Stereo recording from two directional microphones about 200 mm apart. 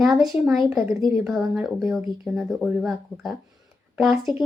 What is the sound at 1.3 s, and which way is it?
Speech, centre (ahead or behind).